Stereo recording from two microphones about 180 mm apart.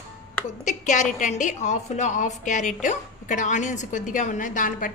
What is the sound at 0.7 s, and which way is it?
A woman's voice, 40° left (ahead or behind).